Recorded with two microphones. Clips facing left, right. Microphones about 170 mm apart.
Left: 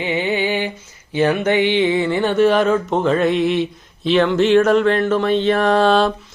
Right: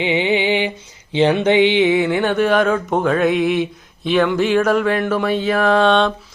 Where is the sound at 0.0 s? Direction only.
20° right (ahead or behind).